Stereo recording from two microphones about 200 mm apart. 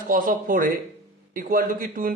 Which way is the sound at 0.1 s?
45° right (ahead or behind).